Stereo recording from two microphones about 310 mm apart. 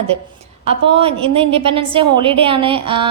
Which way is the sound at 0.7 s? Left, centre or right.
Centre.